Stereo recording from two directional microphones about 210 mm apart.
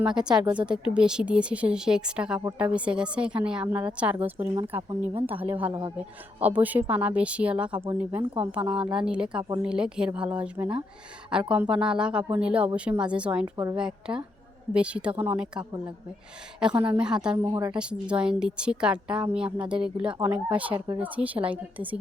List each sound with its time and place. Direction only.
0.0 s a woman's voice: 5° right (ahead or behind)
17.7 s a woman's voice: 5° right (ahead or behind)
20.7 s speech: 20° right (ahead or behind)
21.0 s speech: 5° right (ahead or behind)